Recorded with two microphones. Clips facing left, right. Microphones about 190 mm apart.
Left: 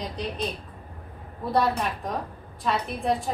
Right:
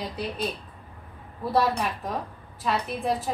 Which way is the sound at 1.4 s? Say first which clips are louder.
Even; centre (ahead or behind).